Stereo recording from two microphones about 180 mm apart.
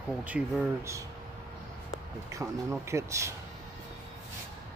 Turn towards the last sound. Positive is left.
turn(degrees=-15)  # may be behind; listen again after turning